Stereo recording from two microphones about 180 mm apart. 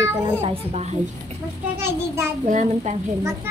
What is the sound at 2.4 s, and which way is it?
Speech, 45° right (ahead or behind).